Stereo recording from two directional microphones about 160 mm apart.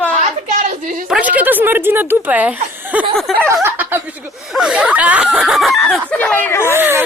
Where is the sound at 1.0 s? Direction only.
5° right (ahead or behind).